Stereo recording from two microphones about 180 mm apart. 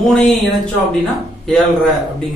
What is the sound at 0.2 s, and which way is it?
Speech, 5° left (ahead or behind).